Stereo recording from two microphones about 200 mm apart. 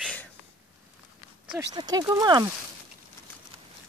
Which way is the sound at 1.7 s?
20° right (ahead or behind).